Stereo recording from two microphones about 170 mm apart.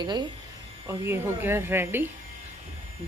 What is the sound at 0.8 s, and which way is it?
Speech, 15° right (ahead or behind).